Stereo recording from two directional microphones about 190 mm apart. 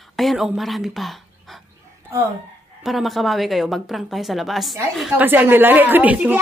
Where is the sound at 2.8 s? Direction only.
Centre (ahead or behind).